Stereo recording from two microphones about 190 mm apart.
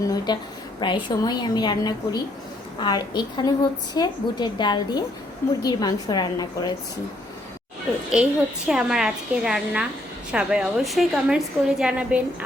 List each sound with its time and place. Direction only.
0.0 s a sound: 20° left (ahead or behind)
0.8 s a woman's voice: 25° left (ahead or behind)
8.1 s a woman's voice: 5° right (ahead or behind)